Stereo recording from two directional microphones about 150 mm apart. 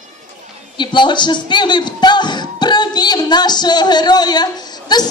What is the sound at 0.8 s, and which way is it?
Speech, 30° left (ahead or behind).